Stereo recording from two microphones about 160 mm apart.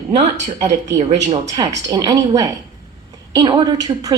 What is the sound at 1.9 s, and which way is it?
Speech, 25° right (ahead or behind).